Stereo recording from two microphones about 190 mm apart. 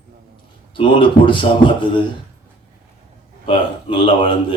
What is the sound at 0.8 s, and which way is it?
Speech, 25° left (ahead or behind).